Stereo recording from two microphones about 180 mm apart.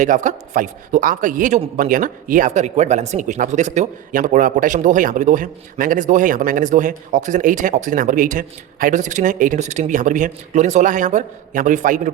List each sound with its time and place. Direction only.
0.0 s a man's voice: 45° right (ahead or behind)